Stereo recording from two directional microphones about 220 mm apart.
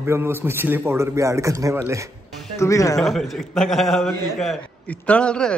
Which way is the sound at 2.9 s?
Centre (ahead or behind).